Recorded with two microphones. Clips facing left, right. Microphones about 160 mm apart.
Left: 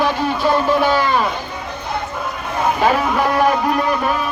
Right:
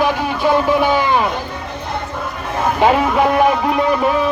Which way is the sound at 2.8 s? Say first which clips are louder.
Right 5 dB; 20° right (ahead or behind).